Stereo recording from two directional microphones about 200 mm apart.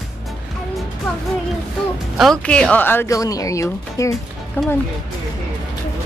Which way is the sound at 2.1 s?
Centre (ahead or behind).